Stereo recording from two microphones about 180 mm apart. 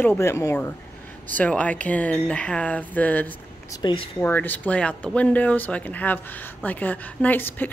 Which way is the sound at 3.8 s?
25° left (ahead or behind).